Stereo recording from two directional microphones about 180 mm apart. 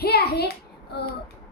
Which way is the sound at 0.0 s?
60° left (ahead or behind).